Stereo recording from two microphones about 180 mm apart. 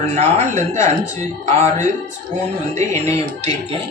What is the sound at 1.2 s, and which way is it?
Speech, 45° right (ahead or behind).